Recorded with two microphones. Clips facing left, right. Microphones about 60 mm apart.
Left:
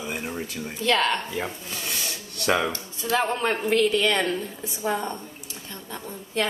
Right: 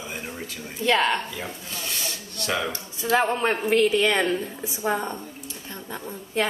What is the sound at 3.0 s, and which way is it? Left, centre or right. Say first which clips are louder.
A woman's voice: right 2 dB; centre.